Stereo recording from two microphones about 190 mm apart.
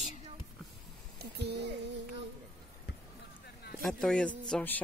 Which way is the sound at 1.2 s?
60° right (ahead or behind).